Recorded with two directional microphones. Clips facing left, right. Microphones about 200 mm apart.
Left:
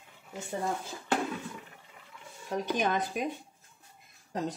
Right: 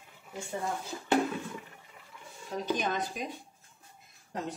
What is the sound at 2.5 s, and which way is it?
Speech, 60° left (ahead or behind).